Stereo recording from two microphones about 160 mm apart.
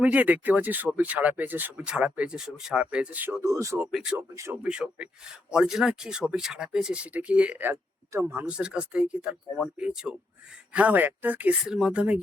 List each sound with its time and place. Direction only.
0.0 s speech: 10° right (ahead or behind)
3.9 s speech: 5° right (ahead or behind)
4.2 s speech: 15° right (ahead or behind)